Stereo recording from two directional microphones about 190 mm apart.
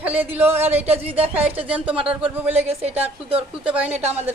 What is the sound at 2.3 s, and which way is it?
Speech, 10° right (ahead or behind).